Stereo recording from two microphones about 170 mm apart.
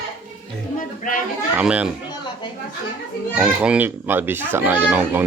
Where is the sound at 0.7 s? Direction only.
50° left (ahead or behind).